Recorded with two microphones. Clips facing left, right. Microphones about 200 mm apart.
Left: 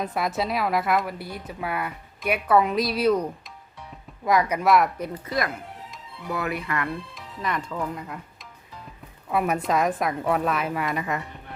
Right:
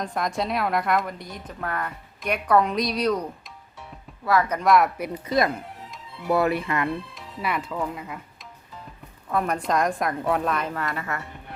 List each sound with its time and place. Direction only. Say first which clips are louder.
0.0 s a woman's voice: left 1 dB; 5° left (ahead or behind)
4.3 s speech: even; 15° left (ahead or behind)
4.9 s speech: right 4 dB; 15° right (ahead or behind)
6.3 s speech: right 6 dB; 30° right (ahead or behind)
7.1 s speech: right 1 dB; 5° right (ahead or behind)
9.3 s a woman's voice: left 1 dB; 5° left (ahead or behind)